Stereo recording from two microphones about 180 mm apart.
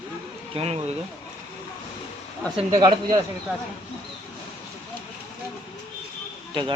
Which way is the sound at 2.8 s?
25° right (ahead or behind).